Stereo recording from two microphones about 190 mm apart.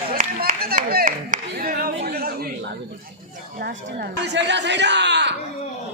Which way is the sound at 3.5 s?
55° right (ahead or behind).